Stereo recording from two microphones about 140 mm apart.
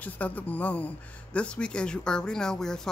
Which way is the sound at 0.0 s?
10° left (ahead or behind).